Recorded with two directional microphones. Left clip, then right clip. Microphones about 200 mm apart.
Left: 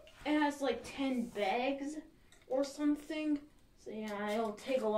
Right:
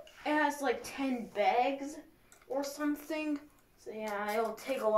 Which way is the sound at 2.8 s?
20° right (ahead or behind).